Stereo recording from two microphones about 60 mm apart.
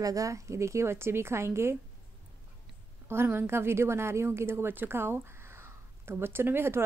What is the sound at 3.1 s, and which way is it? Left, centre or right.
A woman's voice, right.